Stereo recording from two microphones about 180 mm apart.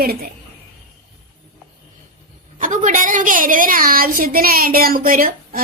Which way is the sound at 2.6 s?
45° right (ahead or behind).